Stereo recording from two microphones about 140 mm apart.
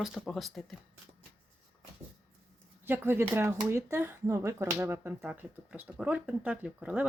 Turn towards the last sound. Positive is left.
turn(degrees=-10)  # may be behind; listen again after turning